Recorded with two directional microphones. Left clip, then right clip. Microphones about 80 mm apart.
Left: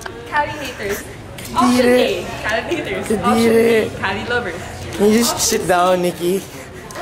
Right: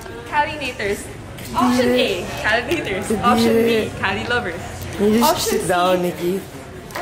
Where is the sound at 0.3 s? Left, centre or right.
Centre.